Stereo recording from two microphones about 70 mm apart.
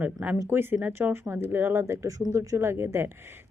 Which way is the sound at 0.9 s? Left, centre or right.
Right.